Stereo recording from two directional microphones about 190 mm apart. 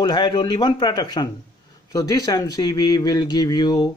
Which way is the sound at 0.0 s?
25° left (ahead or behind).